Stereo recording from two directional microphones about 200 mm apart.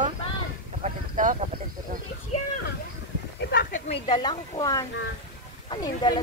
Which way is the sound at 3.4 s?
55° left (ahead or behind).